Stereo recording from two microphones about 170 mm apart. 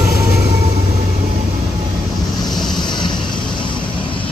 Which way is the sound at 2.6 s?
25° left (ahead or behind).